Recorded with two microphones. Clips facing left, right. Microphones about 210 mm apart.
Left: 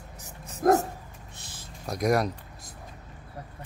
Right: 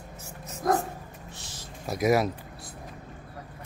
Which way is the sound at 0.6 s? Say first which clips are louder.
Left 5 dB; 50° left (ahead or behind).